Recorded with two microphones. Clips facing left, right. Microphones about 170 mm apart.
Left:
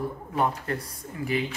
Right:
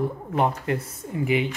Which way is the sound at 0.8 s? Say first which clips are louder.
Right 6 dB; 20° right (ahead or behind).